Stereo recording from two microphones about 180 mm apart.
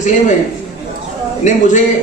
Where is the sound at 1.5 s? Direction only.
45° left (ahead or behind).